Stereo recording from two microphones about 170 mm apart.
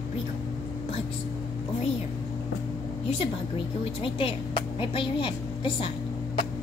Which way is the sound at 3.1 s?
30° left (ahead or behind).